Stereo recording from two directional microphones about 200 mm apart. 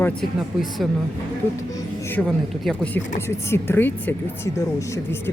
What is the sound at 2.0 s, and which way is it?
Speech, 5° left (ahead or behind).